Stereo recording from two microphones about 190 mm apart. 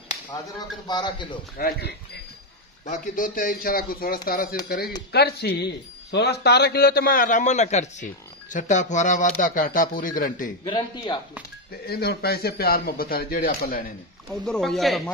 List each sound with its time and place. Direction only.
0.8 s a man's voice: 20° left (ahead or behind)
1.6 s speech: 60° left (ahead or behind)
2.8 s a man's voice: 45° left (ahead or behind)
10.6 s a man's voice: 25° left (ahead or behind)
11.8 s a man's voice: 55° left (ahead or behind)
14.3 s speech: 5° left (ahead or behind)